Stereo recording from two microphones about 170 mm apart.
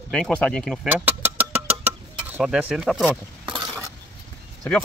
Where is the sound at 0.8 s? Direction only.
10° right (ahead or behind).